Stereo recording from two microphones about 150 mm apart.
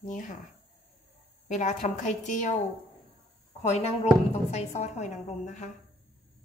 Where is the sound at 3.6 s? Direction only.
45° left (ahead or behind).